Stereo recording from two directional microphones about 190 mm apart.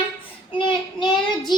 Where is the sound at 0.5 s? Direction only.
25° left (ahead or behind).